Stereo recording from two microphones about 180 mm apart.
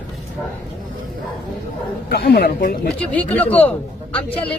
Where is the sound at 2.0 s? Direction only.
60° left (ahead or behind).